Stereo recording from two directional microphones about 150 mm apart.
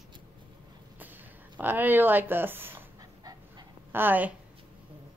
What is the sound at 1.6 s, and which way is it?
Dog, 15° right (ahead or behind).